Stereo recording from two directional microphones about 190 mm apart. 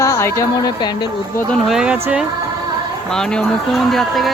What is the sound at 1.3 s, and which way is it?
Speech, centre (ahead or behind).